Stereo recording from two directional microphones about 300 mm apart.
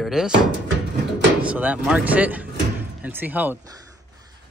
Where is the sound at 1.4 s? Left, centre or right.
Centre.